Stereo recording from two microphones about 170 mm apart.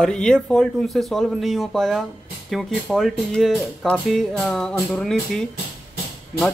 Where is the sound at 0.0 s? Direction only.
5° left (ahead or behind).